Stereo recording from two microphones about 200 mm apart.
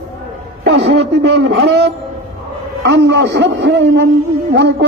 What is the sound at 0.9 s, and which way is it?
A man's voice, 60° right (ahead or behind).